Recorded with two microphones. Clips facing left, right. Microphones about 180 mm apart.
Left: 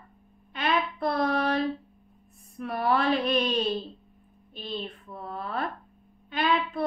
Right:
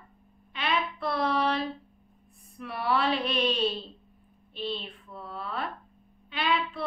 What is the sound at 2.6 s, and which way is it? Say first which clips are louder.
A woman's voice: left 2 dB; 45° left (ahead or behind).